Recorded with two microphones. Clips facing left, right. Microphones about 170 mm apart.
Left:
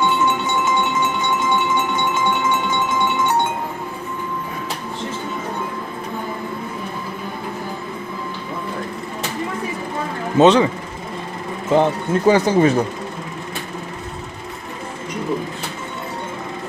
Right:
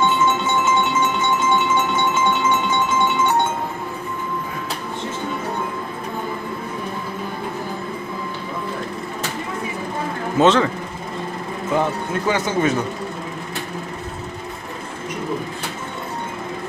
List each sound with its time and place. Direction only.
0.2 s music: 15° left (ahead or behind)
10.4 s speech: 15° left (ahead or behind)
11.7 s speech: 30° left (ahead or behind)